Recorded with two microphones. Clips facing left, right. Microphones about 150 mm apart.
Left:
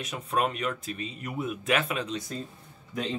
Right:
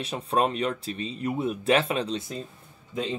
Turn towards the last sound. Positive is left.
turn(degrees=-25)  # may be behind; listen again after turning